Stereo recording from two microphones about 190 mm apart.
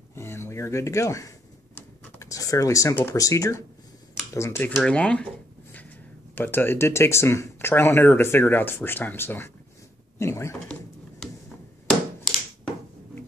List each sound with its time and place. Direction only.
0.1 s speech: 15° left (ahead or behind)